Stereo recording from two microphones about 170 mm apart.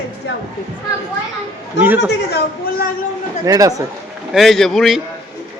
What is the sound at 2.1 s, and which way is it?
Speech, 65° left (ahead or behind).